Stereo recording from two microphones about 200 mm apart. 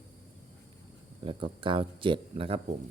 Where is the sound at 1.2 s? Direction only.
25° right (ahead or behind).